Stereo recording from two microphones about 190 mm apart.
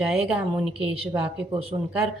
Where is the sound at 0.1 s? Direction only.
5° right (ahead or behind).